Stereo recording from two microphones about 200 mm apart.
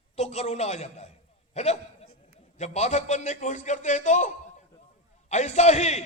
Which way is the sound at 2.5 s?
35° left (ahead or behind).